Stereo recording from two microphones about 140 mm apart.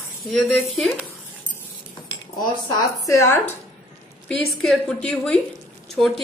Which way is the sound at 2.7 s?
20° left (ahead or behind).